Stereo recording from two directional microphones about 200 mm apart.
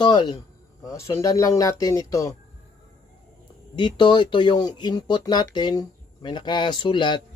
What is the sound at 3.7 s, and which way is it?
Speech, 25° left (ahead or behind).